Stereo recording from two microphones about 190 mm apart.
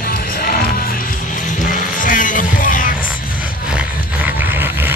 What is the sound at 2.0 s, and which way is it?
Music, 45° left (ahead or behind).